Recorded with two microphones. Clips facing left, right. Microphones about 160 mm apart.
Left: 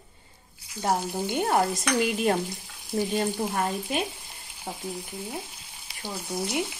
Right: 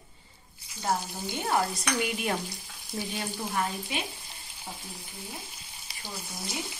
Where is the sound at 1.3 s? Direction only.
55° left (ahead or behind).